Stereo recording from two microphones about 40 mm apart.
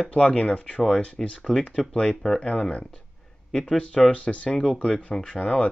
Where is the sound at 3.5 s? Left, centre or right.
Centre.